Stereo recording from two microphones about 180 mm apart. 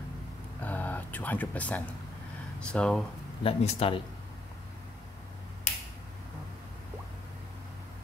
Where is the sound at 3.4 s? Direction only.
30° left (ahead or behind).